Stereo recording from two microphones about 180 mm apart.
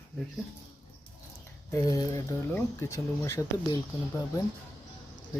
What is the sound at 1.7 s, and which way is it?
Speech, 20° left (ahead or behind).